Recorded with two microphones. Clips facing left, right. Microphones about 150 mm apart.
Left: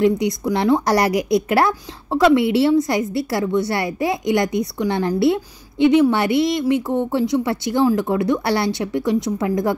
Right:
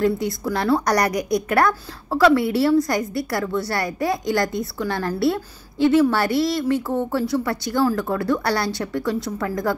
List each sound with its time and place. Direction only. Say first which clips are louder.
0.2 s a woman's voice: left 4 dB; 20° left (ahead or behind)